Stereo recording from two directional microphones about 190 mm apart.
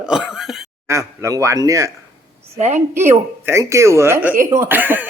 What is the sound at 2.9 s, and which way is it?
Speech, 15° right (ahead or behind).